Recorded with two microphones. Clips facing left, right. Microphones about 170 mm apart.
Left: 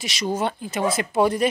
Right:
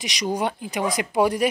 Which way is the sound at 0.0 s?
15° right (ahead or behind).